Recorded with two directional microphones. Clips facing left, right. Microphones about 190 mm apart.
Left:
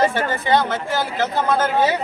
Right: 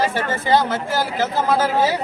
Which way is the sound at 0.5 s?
Centre (ahead or behind).